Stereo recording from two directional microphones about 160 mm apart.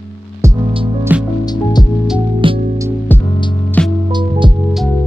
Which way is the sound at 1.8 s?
25° left (ahead or behind).